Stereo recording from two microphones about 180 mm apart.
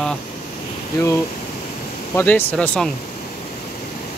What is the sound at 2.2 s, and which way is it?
Speech, 10° left (ahead or behind).